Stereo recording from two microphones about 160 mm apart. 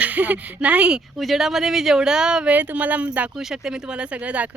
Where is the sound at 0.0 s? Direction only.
10° right (ahead or behind).